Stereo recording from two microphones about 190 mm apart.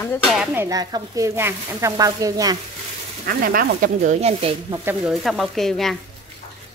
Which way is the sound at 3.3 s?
50° right (ahead or behind).